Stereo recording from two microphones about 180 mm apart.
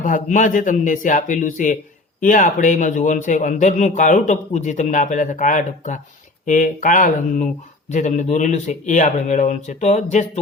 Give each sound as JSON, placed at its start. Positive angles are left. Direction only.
{"t": 0.0, "sound": "a man's voice", "side_deg": 45}